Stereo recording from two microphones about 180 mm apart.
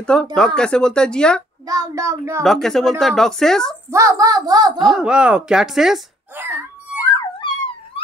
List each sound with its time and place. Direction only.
0.0 s a child's voice: 5° left (ahead or behind)
1.7 s speech: 15° right (ahead or behind)
2.4 s a child's voice: centre (ahead or behind)
3.9 s a child's voice: 20° right (ahead or behind)
4.7 s a child's voice: centre (ahead or behind)
7.0 s music: 25° left (ahead or behind)